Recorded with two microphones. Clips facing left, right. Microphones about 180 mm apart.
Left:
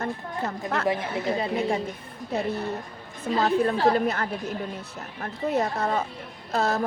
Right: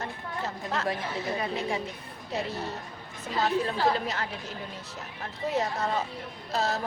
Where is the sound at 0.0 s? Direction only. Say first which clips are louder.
Left 5 dB; 55° left (ahead or behind).